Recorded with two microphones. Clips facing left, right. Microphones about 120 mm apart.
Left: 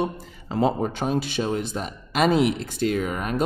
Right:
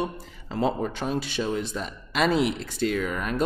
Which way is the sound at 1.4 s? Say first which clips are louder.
Left 2 dB; 50° left (ahead or behind).